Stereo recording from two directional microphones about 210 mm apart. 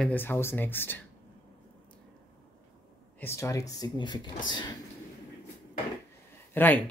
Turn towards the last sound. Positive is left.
turn(degrees=10)  # may be behind; listen again after turning